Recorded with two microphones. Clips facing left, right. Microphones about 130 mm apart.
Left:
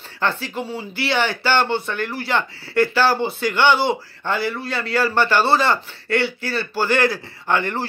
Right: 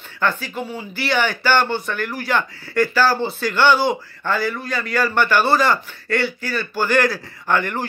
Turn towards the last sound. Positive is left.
turn(degrees=25)  # may be behind; listen again after turning